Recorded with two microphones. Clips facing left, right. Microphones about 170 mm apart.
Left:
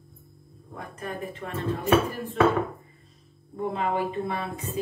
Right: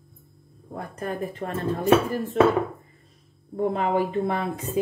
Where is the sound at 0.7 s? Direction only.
40° right (ahead or behind).